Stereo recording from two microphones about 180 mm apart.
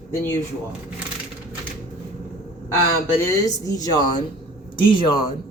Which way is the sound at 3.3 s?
20° left (ahead or behind).